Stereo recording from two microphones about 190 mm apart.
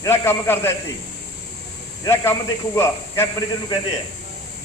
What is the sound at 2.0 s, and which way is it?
A man's voice, 15° left (ahead or behind).